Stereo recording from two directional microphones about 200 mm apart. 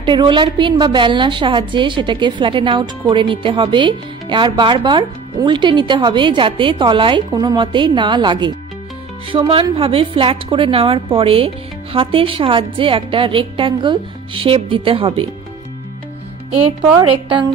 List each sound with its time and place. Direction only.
0.0 s a woman's voice: 25° right (ahead or behind)